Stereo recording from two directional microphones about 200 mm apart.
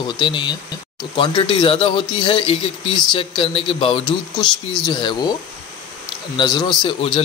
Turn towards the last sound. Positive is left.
turn(degrees=25)  # may be behind; listen again after turning